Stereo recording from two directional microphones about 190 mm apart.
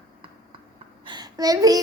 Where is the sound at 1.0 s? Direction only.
20° right (ahead or behind).